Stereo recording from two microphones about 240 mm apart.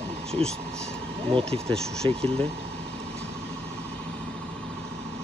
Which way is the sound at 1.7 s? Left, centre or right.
Centre.